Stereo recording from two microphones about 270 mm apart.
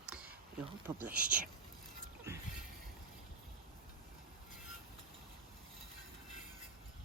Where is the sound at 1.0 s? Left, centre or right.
Centre.